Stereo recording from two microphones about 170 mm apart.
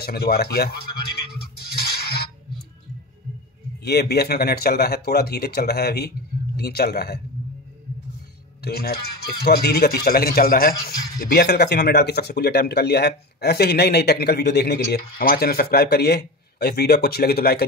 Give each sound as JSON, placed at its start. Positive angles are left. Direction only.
{"t": 0.0, "sound": "a man's voice", "side_deg": 65}
{"t": 1.6, "sound": "music", "side_deg": 65}
{"t": 3.8, "sound": "speech", "side_deg": 70}
{"t": 8.6, "sound": "a man's voice", "side_deg": 70}
{"t": 11.1, "sound": "speech", "side_deg": 70}